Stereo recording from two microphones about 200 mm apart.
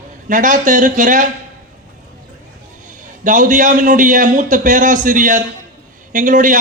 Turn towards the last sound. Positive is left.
turn(degrees=-40)  # may be behind; listen again after turning